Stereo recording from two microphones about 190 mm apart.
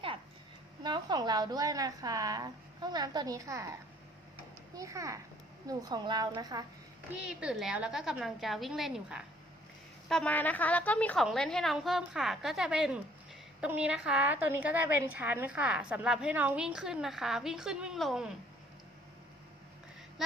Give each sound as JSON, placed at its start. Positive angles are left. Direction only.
{"t": 0.8, "sound": "a woman's voice", "side_deg": -25}
{"t": 7.1, "sound": "a woman's voice", "side_deg": -5}